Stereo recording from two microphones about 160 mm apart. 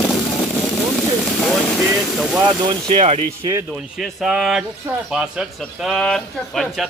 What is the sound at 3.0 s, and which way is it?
Speech, 40° right (ahead or behind).